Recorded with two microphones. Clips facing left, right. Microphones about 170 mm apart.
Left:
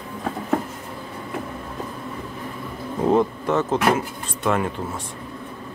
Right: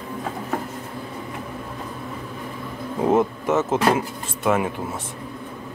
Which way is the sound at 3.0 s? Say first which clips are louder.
Even; 20° right (ahead or behind).